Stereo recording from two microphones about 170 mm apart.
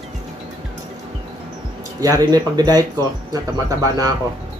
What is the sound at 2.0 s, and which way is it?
Speech, 20° right (ahead or behind).